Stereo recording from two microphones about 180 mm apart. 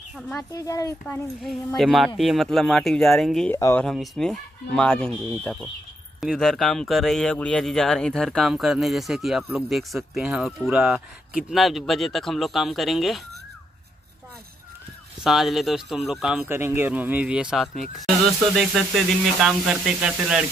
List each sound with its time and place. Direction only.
0.1 s speech: 5° left (ahead or behind)
0.5 s speech: 20° left (ahead or behind); by 3.5 s centre (ahead or behind)
3.5 s speech: 15° left (ahead or behind)
3.8 s speech: centre (ahead or behind)
15.2 s speech: centre (ahead or behind)